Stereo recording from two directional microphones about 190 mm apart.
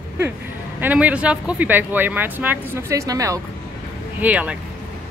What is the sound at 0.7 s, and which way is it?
Speech, 10° right (ahead or behind).